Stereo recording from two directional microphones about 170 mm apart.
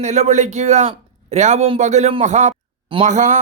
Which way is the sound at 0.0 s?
40° right (ahead or behind).